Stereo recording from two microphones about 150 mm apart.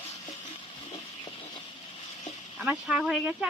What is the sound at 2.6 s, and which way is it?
Speech, 5° right (ahead or behind).